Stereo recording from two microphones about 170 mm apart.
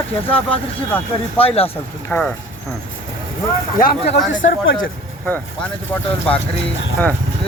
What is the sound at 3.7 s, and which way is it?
Speech, 60° left (ahead or behind).